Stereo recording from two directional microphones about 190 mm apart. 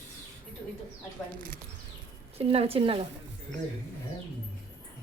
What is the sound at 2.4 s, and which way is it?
Speech, 30° right (ahead or behind).